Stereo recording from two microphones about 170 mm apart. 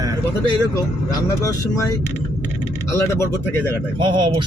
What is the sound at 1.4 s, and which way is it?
Speech, 20° left (ahead or behind).